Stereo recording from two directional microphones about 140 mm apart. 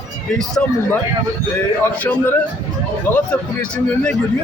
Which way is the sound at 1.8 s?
15° left (ahead or behind).